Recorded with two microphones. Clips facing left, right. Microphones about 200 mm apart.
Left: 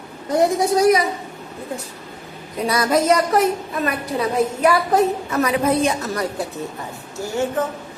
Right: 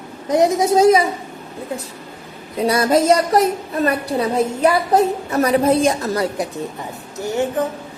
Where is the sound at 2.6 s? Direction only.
30° right (ahead or behind).